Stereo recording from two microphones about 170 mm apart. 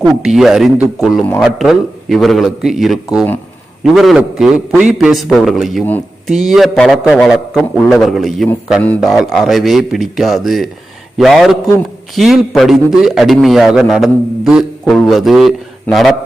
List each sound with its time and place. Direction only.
0.2 s a man's voice: centre (ahead or behind)